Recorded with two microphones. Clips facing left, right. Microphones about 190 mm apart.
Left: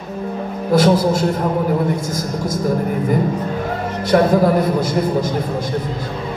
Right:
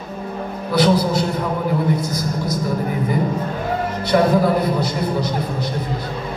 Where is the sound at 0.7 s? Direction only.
45° left (ahead or behind).